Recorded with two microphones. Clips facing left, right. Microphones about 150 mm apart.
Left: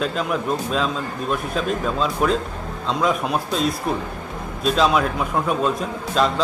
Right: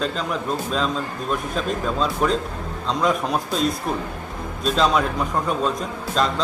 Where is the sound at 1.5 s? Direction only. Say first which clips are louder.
Left 1 dB; centre (ahead or behind).